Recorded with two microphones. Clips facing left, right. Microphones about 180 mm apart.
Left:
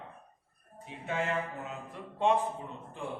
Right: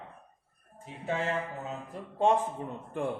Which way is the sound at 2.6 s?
60° right (ahead or behind).